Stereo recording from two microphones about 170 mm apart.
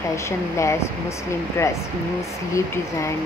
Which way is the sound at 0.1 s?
15° left (ahead or behind).